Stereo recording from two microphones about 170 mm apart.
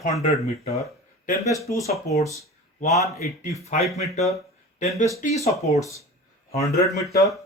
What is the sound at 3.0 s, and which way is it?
Speech, 20° right (ahead or behind).